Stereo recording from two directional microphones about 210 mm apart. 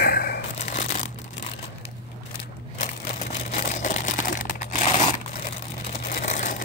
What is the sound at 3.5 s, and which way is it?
Crumpling, 35° left (ahead or behind).